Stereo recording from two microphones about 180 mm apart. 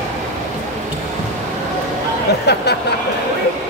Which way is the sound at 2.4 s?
65° left (ahead or behind).